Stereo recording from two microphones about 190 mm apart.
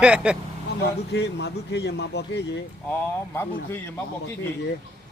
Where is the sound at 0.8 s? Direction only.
60° left (ahead or behind).